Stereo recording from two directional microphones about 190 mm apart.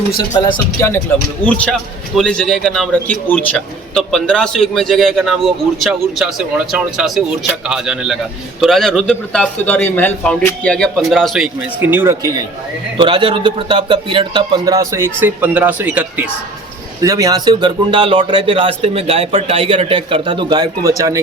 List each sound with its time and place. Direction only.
0.8 s a man's voice: 15° left (ahead or behind); by 12.3 s 10° right (ahead or behind)
13.0 s a man's voice: 25° right (ahead or behind); by 16.3 s 5° right (ahead or behind)
17.0 s a man's voice: 20° right (ahead or behind)